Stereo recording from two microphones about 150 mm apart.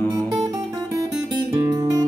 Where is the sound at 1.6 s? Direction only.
25° right (ahead or behind).